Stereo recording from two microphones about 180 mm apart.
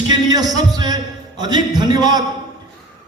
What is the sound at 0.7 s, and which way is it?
A man's voice, 20° right (ahead or behind).